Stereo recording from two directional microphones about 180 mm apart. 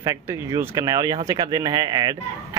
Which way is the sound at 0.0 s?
20° right (ahead or behind).